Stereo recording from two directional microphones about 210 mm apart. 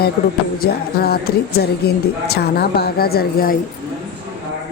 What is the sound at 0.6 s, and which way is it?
Speech, 45° left (ahead or behind).